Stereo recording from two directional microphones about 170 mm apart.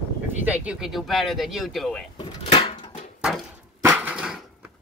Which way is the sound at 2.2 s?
30° left (ahead or behind).